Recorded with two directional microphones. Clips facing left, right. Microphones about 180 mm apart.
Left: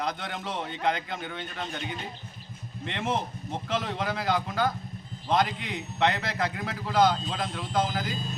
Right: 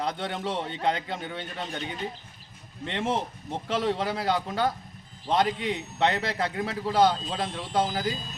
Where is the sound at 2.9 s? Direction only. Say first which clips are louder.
Right 2 dB; 30° right (ahead or behind).